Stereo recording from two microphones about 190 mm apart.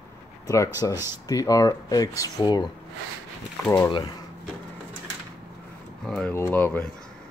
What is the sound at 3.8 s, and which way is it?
Speech, 25° left (ahead or behind).